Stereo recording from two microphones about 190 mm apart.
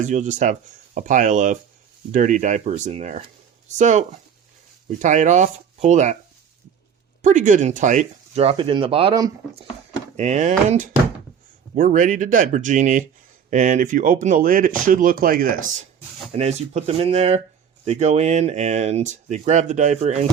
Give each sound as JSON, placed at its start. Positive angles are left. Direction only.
{"t": 0.0, "sound": "speech", "side_deg": -40}
{"t": 7.2, "sound": "speech", "side_deg": -40}
{"t": 16.3, "sound": "speech", "side_deg": -35}